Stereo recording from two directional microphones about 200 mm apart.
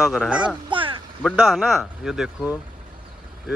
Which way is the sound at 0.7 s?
25° right (ahead or behind).